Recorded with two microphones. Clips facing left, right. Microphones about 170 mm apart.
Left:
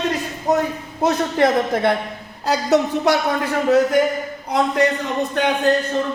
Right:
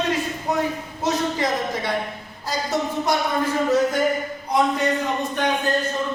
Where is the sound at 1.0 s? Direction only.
55° left (ahead or behind).